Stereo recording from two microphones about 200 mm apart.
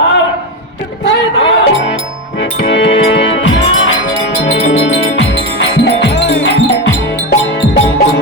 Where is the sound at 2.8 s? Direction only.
30° left (ahead or behind).